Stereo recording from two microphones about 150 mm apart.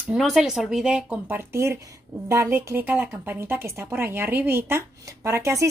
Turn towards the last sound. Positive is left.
turn(degrees=-20)  # may be behind; listen again after turning